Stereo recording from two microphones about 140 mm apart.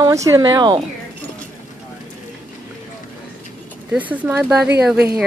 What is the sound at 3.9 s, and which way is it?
Speech, 10° right (ahead or behind).